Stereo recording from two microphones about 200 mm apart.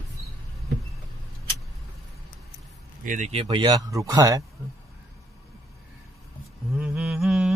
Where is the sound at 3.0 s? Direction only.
40° right (ahead or behind).